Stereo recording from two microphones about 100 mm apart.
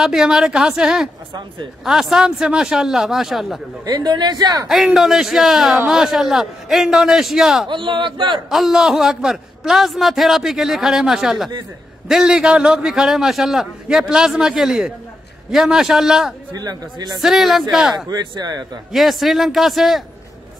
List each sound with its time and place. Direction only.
0.0 s a man's voice: 5° right (ahead or behind)
3.8 s speech: 45° right (ahead or behind)
4.6 s a man's voice: 5° right (ahead or behind)
7.6 s speech: 55° right (ahead or behind)
8.5 s a man's voice: 5° right (ahead or behind)
16.5 s speech: 40° right (ahead or behind)
17.2 s a man's voice: 5° right (ahead or behind)
18.0 s speech: 45° right (ahead or behind)
18.9 s a man's voice: centre (ahead or behind)